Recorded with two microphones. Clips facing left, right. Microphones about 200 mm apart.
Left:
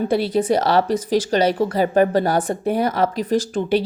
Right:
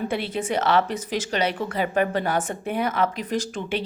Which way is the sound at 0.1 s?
35° left (ahead or behind).